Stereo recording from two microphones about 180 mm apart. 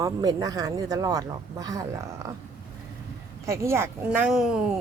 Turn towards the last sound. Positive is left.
turn(degrees=-5)  # may be behind; listen again after turning